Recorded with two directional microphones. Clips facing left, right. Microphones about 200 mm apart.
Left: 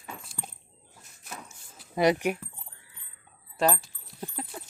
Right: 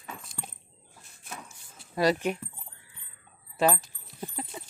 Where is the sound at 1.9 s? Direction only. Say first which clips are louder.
Left 2 dB; 20° left (ahead or behind).